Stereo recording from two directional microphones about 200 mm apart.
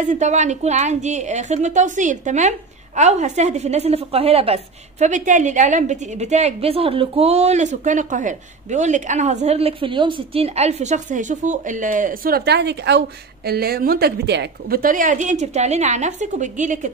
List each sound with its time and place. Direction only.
0.1 s a woman's voice: 35° right (ahead or behind)